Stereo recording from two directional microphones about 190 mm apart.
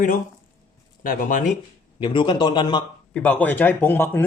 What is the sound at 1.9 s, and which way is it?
Speech, 25° left (ahead or behind).